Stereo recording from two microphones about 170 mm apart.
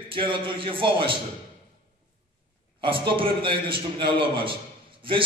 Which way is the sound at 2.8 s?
30° right (ahead or behind).